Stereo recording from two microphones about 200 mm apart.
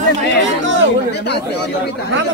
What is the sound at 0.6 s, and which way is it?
Speech, 65° right (ahead or behind).